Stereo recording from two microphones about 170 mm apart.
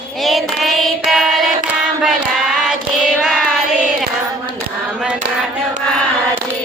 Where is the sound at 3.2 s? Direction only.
5° right (ahead or behind).